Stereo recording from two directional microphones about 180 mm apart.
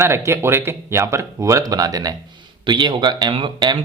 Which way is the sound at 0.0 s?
15° right (ahead or behind).